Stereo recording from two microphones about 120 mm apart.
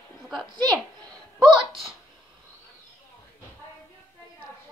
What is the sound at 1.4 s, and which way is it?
Speech, 5° right (ahead or behind).